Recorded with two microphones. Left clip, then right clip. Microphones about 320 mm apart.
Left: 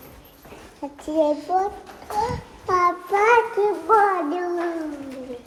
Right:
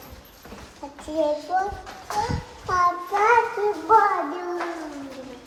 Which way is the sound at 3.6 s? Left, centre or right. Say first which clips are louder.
Left 3 dB; left.